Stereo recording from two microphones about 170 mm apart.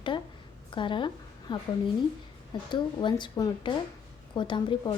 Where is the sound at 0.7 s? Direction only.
30° left (ahead or behind).